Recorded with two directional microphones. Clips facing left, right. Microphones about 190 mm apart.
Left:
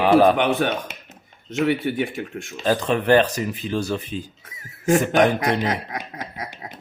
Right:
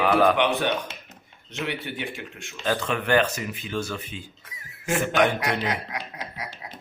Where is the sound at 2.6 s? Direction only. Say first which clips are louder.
Left 5 dB; 35° left (ahead or behind).